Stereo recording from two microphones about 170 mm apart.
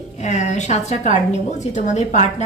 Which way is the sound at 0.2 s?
45° left (ahead or behind).